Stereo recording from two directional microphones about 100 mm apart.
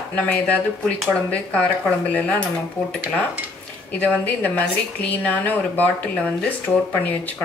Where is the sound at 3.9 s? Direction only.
15° left (ahead or behind).